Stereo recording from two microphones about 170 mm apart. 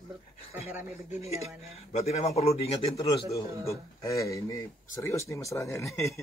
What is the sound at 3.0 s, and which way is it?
A man's voice, 20° left (ahead or behind).